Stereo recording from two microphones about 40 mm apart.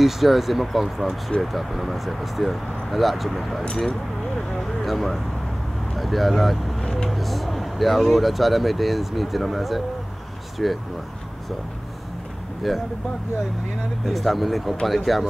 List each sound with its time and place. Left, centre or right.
0.0 s speech: centre
4.5 s vehicle: centre
5.9 s speech: centre
6.8 s vehicle: centre
7.1 s speech: centre
12.7 s speech: centre
14.0 s speech: centre